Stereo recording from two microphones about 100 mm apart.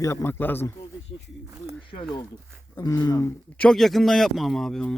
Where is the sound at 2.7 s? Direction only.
40° left (ahead or behind).